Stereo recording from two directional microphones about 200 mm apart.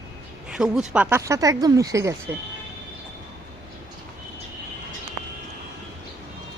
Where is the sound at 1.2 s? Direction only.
15° right (ahead or behind).